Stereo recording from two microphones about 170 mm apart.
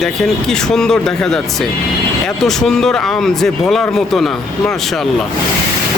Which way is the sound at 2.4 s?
Centre (ahead or behind).